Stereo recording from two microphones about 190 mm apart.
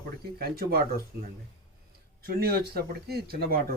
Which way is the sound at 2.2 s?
55° right (ahead or behind).